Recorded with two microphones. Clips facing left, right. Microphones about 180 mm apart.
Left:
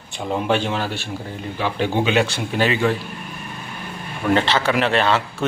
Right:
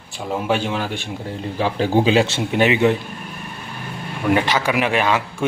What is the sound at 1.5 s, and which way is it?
A man's voice, 35° right (ahead or behind).